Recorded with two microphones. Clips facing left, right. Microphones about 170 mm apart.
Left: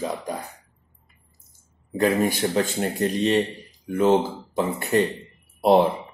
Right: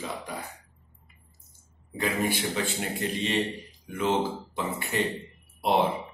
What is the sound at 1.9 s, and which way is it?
Speech, 45° left (ahead or behind).